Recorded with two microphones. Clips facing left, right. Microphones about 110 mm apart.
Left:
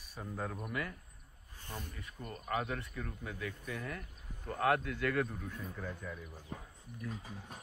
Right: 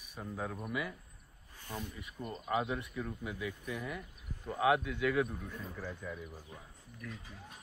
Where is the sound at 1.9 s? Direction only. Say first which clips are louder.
Right 3 dB; 15° right (ahead or behind).